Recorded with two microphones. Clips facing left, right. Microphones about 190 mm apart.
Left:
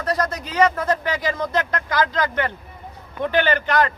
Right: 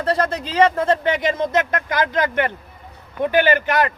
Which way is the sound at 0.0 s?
30° right (ahead or behind).